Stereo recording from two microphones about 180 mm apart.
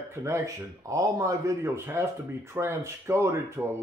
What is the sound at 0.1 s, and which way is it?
Speech, 15° right (ahead or behind).